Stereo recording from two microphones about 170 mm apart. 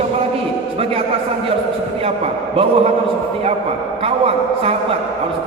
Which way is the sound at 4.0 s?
35° right (ahead or behind).